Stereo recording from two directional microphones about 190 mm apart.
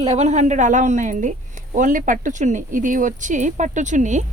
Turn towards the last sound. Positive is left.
turn(degrees=-40)  # may be behind; listen again after turning